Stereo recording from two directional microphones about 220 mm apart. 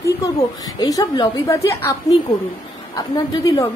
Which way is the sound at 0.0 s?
15° left (ahead or behind).